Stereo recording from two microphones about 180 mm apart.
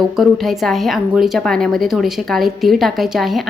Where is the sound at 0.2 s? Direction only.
Centre (ahead or behind).